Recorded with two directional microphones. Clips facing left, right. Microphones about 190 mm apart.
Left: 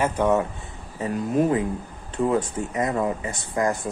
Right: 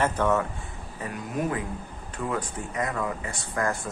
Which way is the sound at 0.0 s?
15° left (ahead or behind).